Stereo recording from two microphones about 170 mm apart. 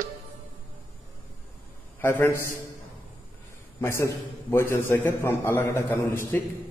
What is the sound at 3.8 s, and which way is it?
A man's voice, 15° left (ahead or behind).